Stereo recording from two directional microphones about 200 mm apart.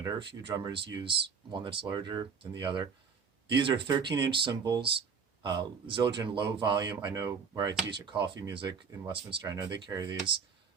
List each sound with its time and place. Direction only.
0.0 s speech: 25° right (ahead or behind)